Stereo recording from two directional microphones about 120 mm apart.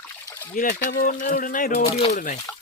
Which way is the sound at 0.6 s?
90° left.